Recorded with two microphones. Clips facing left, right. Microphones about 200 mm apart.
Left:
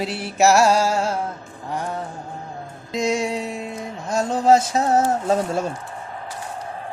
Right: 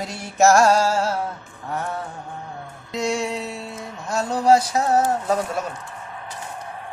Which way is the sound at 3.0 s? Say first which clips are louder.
Left 2 dB; 10° left (ahead or behind).